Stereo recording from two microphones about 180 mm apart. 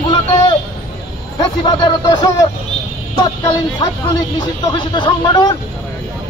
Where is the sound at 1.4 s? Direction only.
20° left (ahead or behind).